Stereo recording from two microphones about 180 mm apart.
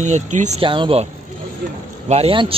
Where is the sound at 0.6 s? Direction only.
30° right (ahead or behind).